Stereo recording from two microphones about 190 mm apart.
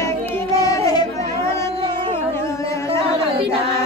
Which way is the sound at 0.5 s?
20° left (ahead or behind).